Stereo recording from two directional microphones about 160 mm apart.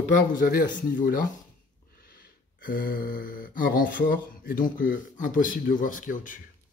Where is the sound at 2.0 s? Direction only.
65° left (ahead or behind).